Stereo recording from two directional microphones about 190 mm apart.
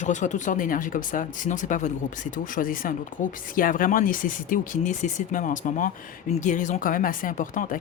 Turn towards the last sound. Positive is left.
turn(degrees=45)  # may be behind; listen again after turning